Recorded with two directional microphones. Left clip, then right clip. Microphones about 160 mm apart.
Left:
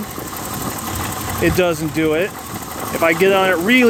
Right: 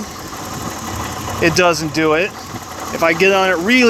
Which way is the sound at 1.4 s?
25° left (ahead or behind).